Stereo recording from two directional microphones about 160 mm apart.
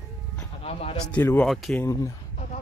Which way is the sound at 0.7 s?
40° left (ahead or behind).